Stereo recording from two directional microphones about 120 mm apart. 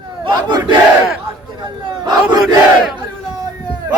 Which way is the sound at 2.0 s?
35° right (ahead or behind).